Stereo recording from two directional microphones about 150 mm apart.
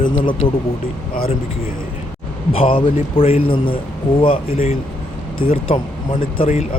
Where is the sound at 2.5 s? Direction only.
35° left (ahead or behind).